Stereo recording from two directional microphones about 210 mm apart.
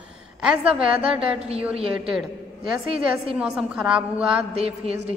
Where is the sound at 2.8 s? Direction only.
25° right (ahead or behind).